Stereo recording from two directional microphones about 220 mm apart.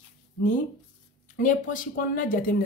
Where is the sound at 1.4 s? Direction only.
35° left (ahead or behind).